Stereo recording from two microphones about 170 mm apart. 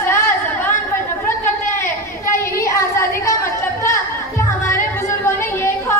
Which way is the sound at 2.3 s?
15° left (ahead or behind).